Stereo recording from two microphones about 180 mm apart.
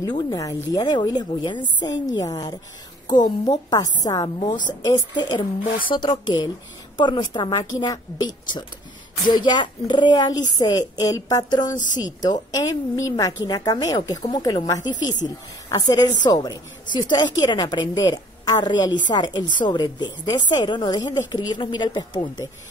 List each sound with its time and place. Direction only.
0.0 s a woman's voice: 20° left (ahead or behind)